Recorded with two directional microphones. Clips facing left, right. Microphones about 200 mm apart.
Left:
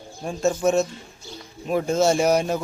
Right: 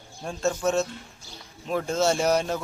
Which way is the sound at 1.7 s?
15° left (ahead or behind).